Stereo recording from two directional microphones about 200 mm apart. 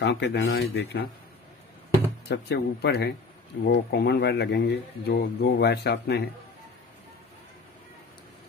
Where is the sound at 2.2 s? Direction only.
55° left (ahead or behind).